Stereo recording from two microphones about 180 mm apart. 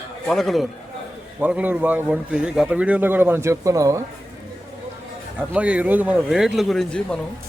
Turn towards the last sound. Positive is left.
turn(degrees=5)  # may be behind; listen again after turning